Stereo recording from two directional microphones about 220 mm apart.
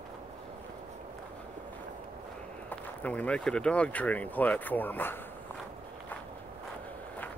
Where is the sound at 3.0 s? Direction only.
5° left (ahead or behind).